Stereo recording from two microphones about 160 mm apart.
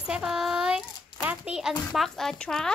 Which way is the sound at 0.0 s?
5° right (ahead or behind).